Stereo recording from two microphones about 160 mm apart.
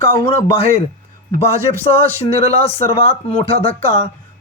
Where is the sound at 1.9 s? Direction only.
40° left (ahead or behind).